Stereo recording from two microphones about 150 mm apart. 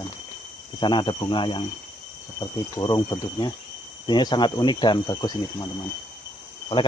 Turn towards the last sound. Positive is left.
turn(degrees=30)  # may be behind; listen again after turning